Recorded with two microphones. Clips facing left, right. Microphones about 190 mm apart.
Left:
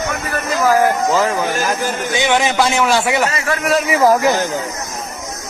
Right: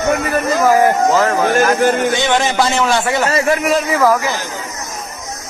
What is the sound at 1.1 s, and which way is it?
Speech, 15° left (ahead or behind).